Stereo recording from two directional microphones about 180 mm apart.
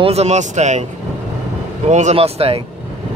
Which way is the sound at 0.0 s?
35° right (ahead or behind).